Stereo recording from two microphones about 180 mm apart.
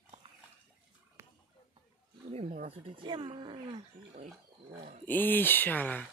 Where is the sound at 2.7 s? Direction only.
25° right (ahead or behind).